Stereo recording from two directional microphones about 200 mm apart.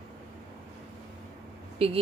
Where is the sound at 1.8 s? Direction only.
30° right (ahead or behind).